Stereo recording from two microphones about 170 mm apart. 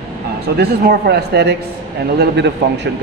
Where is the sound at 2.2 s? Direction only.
90° right.